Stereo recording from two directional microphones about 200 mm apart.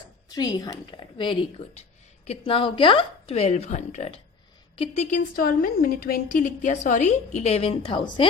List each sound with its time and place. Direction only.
0.3 s a woman's voice: 20° left (ahead or behind)